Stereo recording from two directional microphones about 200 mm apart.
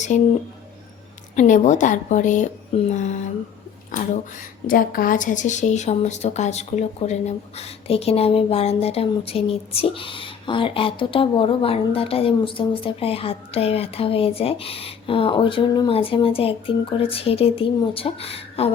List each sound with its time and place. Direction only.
0.1 s a woman's voice: 40° left (ahead or behind)
1.4 s a woman's voice: 35° left (ahead or behind)